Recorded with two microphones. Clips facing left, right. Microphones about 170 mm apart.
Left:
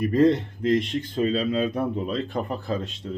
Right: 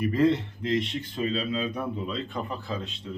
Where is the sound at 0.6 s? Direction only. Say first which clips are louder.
Left 5 dB; 45° left (ahead or behind).